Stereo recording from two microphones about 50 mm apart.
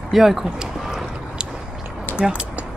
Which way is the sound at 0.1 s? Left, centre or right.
Centre.